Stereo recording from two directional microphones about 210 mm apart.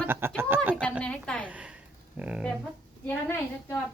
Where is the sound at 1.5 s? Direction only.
5° right (ahead or behind).